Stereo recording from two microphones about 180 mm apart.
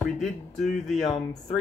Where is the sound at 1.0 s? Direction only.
20° left (ahead or behind).